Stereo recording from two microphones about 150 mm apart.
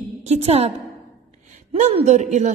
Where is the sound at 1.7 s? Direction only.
40° right (ahead or behind).